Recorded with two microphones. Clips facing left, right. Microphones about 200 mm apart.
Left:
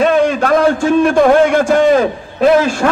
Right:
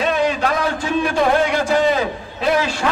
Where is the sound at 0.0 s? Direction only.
50° left (ahead or behind).